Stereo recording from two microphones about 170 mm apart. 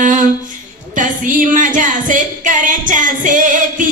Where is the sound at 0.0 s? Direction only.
50° right (ahead or behind).